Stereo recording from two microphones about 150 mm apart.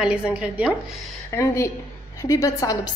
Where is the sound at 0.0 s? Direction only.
5° right (ahead or behind).